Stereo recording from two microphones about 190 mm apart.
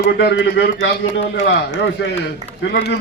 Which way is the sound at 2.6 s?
60° left (ahead or behind).